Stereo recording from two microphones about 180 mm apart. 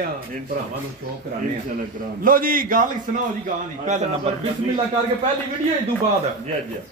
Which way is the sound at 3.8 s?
35° right (ahead or behind).